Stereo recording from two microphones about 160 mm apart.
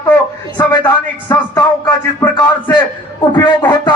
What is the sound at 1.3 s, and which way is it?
Speech, 20° left (ahead or behind).